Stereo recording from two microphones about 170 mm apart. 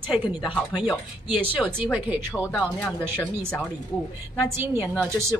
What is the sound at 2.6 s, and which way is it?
Speech, 5° left (ahead or behind).